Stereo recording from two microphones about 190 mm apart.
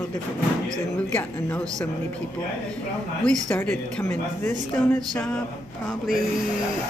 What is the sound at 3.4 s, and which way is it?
A woman's voice, 10° left (ahead or behind).